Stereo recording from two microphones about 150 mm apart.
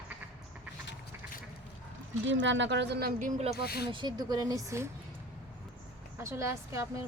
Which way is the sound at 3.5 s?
90° left.